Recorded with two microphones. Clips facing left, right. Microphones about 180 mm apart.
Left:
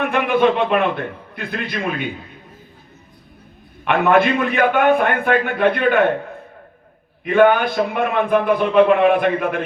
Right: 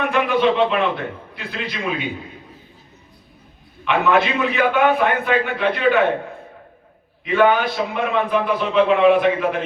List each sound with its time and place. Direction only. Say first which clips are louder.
0.0 s a man's voice: left 2 dB; 55° left (ahead or behind)
3.8 s a man's voice: left 3 dB; 55° left (ahead or behind)
7.3 s a man's voice: left 3 dB; 50° left (ahead or behind)